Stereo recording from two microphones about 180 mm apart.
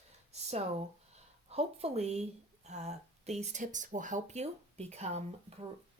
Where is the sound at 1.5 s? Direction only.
35° right (ahead or behind).